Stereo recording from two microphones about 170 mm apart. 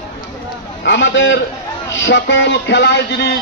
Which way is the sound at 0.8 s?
90° left.